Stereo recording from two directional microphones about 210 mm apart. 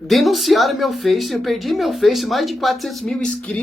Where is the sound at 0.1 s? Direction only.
Centre (ahead or behind).